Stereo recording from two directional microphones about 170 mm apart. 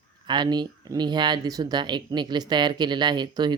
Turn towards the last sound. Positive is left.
turn(degrees=-25)  # may be behind; listen again after turning